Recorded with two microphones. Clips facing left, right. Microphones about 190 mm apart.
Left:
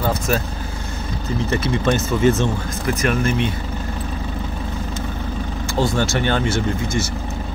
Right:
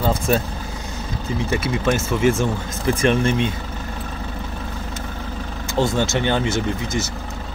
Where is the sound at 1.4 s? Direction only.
10° right (ahead or behind).